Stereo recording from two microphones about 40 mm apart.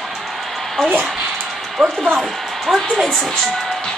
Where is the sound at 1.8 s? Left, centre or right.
Centre.